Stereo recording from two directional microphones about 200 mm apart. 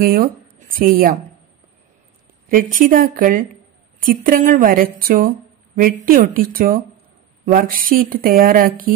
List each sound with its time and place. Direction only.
0.0 s speech: 45° right (ahead or behind)
2.4 s speech: 45° right (ahead or behind)